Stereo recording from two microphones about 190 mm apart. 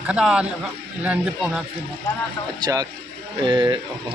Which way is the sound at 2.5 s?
20° right (ahead or behind).